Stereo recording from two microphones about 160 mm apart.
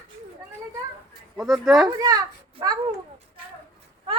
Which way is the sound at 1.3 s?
Centre (ahead or behind).